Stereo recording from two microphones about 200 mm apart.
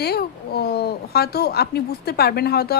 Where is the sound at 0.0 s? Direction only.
50° left (ahead or behind).